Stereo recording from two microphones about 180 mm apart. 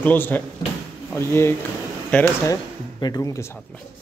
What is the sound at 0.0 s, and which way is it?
Speech, 10° left (ahead or behind).